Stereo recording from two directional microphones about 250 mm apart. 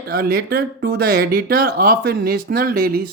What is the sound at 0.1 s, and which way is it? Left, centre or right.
Speech, right.